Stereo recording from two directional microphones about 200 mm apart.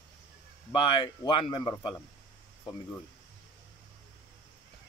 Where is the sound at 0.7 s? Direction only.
25° left (ahead or behind).